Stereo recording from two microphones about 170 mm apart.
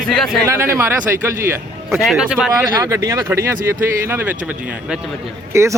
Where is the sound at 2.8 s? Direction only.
20° right (ahead or behind).